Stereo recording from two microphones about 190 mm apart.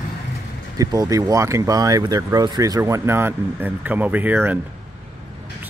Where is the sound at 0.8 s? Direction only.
15° right (ahead or behind).